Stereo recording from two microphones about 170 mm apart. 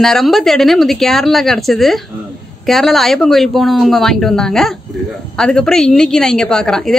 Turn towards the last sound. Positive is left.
turn(degrees=5)  # may be behind; listen again after turning